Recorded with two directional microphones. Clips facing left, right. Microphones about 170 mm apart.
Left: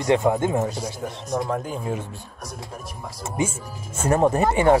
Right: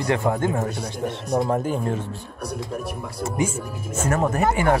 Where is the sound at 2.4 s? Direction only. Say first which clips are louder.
Right 8 dB; 60° right (ahead or behind).